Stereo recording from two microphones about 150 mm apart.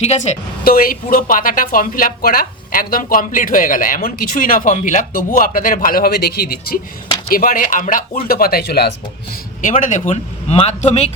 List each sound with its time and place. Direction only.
0.0 s speech: 50° left (ahead or behind)
0.6 s a woman's voice: 70° left (ahead or behind); by 6.7 s 90° left
7.3 s a woman's voice: 70° left (ahead or behind); by 8.9 s 90° left
9.7 s speech: 45° left (ahead or behind)